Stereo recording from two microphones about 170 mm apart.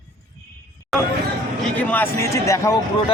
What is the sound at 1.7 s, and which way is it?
Speech, 10° left (ahead or behind).